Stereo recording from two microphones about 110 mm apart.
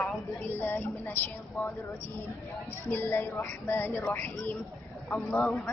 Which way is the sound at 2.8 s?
20° left (ahead or behind).